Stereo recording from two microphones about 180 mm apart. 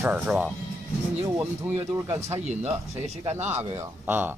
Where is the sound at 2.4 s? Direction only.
40° right (ahead or behind).